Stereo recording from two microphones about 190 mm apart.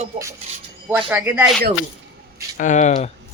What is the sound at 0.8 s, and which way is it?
Speech, 10° right (ahead or behind).